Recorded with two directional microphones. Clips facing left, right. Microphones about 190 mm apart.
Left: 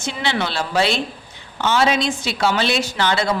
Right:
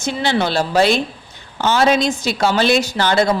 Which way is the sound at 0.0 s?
40° right (ahead or behind).